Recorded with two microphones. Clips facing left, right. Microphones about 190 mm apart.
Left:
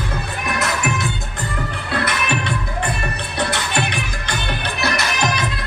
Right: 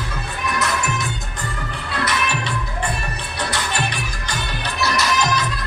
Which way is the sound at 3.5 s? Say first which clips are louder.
Left 2 dB; 60° left (ahead or behind).